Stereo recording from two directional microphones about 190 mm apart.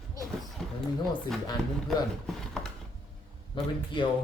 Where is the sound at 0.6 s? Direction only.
Centre (ahead or behind).